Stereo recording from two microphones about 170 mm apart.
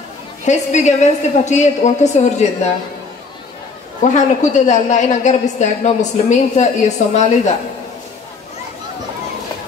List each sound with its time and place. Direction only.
0.5 s a woman's voice: 45° left (ahead or behind)
4.0 s a woman's voice: 45° left (ahead or behind)